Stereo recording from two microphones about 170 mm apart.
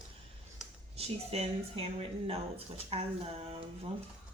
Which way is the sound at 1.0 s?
35° right (ahead or behind).